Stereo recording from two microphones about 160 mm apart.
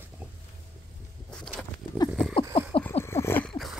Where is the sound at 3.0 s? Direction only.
15° left (ahead or behind).